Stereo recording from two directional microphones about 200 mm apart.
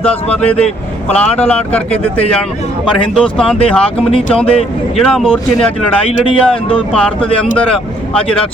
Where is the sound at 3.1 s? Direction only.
5° left (ahead or behind).